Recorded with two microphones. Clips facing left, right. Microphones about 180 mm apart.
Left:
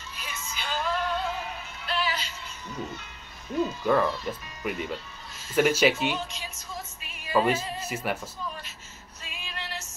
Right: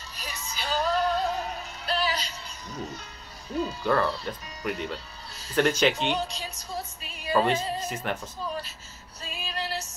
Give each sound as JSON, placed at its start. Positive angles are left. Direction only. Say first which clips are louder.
{"t": 0.2, "sound": "music", "louder": "right 2 dB", "side_deg": -35}
{"t": 3.8, "sound": "speech", "louder": "left 1 dB", "side_deg": 10}
{"t": 6.1, "sound": "speech", "louder": "right 4 dB", "side_deg": -35}
{"t": 7.3, "sound": "music", "louder": "even", "side_deg": 5}
{"t": 7.9, "sound": "speech", "louder": "left 1 dB", "side_deg": 5}
{"t": 9.2, "sound": "female singing", "louder": "right 6 dB", "side_deg": -35}